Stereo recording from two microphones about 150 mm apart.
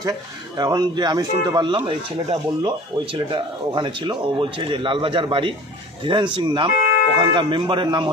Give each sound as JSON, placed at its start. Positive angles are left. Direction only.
{"t": 0.6, "sound": "speech", "side_deg": -25}